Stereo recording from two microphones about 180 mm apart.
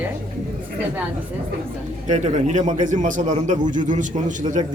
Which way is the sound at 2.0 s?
40° right (ahead or behind).